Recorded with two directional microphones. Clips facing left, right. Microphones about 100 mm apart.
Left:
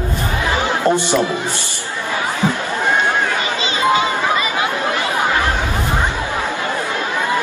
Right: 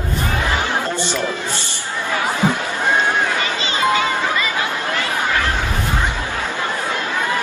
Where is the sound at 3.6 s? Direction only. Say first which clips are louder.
Left 3 dB; 20° left (ahead or behind).